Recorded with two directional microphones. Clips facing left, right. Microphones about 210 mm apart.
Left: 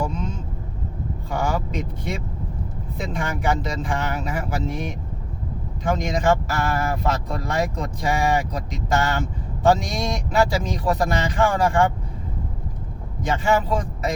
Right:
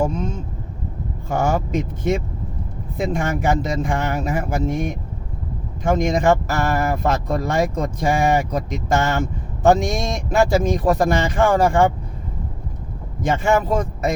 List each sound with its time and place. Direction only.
1.3 s speech: 45° right (ahead or behind)
13.2 s speech: 45° right (ahead or behind)